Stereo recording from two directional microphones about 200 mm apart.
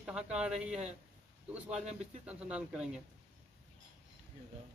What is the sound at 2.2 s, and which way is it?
Speech, 5° right (ahead or behind).